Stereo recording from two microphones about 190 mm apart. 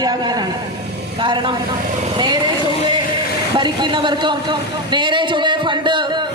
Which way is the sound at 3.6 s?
25° right (ahead or behind).